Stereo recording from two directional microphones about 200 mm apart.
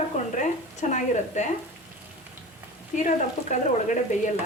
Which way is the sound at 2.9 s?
40° left (ahead or behind).